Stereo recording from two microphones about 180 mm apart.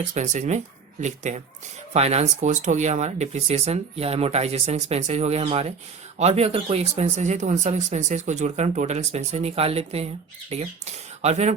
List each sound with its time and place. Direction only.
0.1 s speech: 40° right (ahead or behind)